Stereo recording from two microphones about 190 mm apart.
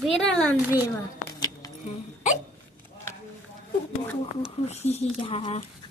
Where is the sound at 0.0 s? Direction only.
Centre (ahead or behind).